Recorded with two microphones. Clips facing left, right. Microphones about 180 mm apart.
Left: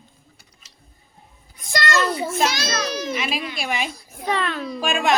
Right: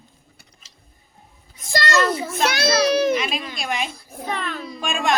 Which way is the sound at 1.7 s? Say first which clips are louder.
Right 1 dB; 25° right (ahead or behind).